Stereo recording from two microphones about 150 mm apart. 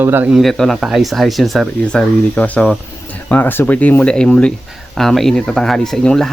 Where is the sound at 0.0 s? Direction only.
15° right (ahead or behind).